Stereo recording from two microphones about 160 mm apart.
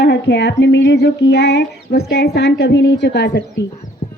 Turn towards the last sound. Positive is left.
turn(degrees=50)  # may be behind; listen again after turning